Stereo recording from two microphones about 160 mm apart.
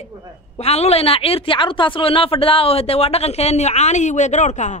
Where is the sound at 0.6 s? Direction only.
40° left (ahead or behind).